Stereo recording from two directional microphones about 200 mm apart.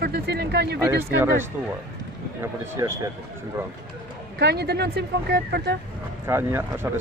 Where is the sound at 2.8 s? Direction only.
15° right (ahead or behind).